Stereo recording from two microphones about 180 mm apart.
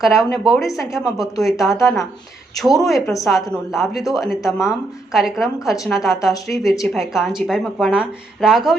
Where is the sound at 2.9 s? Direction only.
15° left (ahead or behind).